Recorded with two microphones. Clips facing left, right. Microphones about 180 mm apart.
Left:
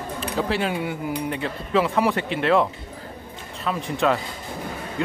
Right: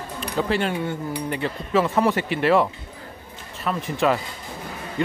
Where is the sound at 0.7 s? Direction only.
10° left (ahead or behind).